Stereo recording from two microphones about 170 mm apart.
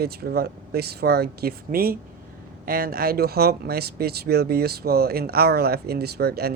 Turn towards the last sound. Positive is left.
turn(degrees=-65)  # may be behind; listen again after turning